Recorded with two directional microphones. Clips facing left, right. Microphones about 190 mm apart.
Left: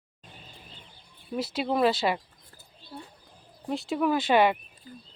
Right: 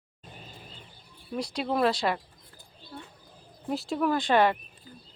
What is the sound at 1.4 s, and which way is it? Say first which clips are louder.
Speech: left 1 dB; 5° left (ahead or behind).